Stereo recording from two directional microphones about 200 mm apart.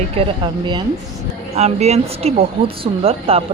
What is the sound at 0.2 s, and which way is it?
Speech, 25° right (ahead or behind).